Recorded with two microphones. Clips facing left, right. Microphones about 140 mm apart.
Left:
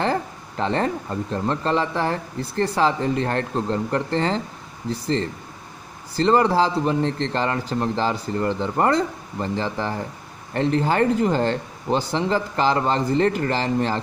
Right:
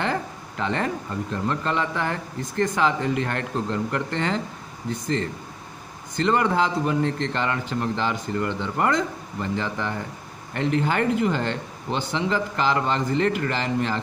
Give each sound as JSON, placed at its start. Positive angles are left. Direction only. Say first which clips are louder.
{"t": 0.0, "sound": "speech", "louder": "left 3 dB", "side_deg": 35}